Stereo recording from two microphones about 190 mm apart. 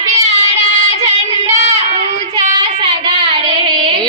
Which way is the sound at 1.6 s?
35° right (ahead or behind).